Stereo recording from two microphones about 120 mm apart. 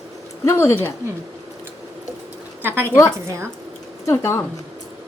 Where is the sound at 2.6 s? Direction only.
20° right (ahead or behind).